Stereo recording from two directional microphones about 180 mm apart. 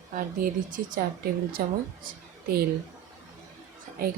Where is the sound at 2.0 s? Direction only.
55° right (ahead or behind).